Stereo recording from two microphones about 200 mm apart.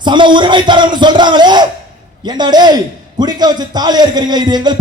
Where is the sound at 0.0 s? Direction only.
25° right (ahead or behind).